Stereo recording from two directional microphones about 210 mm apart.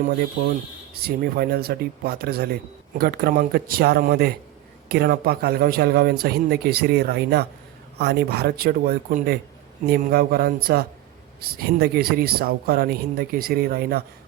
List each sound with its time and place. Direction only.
1.0 s speech: 50° right (ahead or behind)